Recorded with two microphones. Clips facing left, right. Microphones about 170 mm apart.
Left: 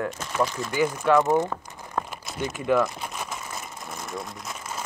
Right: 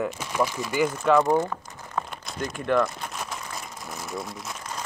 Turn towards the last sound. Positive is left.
turn(degrees=5)  # may be behind; listen again after turning